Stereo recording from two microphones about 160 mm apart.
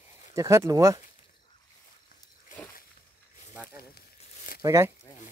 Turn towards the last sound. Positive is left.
turn(degrees=-20)  # may be behind; listen again after turning